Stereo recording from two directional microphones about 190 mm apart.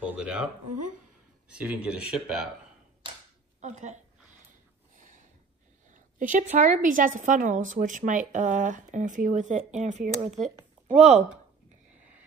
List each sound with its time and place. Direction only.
0.0 s a sound: 5° right (ahead or behind)
1.5 s speech: 5° right (ahead or behind)
3.6 s a woman's voice: 40° right (ahead or behind)
4.5 s snort: 40° right (ahead or behind)
5.9 s a woman's voice: 45° right (ahead or behind)